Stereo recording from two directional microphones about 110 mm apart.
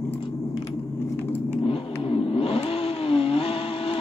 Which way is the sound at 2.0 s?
55° left (ahead or behind).